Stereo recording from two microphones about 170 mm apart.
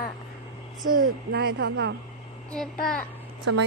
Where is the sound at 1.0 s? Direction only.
75° right (ahead or behind).